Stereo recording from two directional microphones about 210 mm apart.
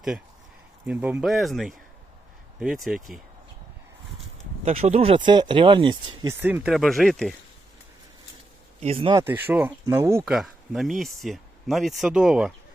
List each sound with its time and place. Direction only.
0.9 s speech: 5° right (ahead or behind)
4.6 s speech: 30° right (ahead or behind)
6.4 s speech: 5° right (ahead or behind)
8.8 s speech: 30° right (ahead or behind)
9.2 s speech: 10° right (ahead or behind)